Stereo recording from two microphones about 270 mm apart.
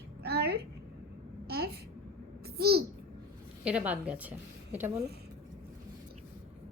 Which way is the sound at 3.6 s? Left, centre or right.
Centre.